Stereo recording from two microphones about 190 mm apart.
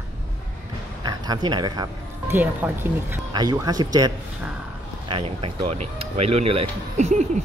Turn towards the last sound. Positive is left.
turn(degrees=-35)  # may be behind; listen again after turning